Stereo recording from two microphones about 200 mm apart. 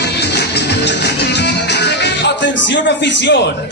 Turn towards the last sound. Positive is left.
turn(degrees=60)  # may be behind; listen again after turning